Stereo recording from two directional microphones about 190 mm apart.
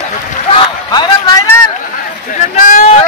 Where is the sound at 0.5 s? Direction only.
20° left (ahead or behind).